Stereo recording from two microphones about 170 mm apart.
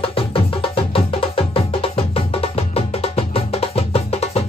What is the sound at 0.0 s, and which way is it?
Music, 35° left (ahead or behind).